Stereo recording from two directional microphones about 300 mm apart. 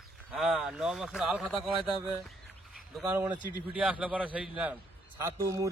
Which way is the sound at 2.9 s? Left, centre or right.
Centre.